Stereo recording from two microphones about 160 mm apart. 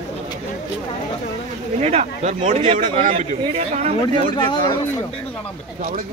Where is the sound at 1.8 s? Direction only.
40° right (ahead or behind).